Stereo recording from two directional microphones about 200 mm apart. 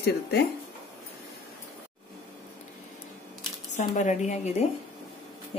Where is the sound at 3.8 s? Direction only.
40° left (ahead or behind).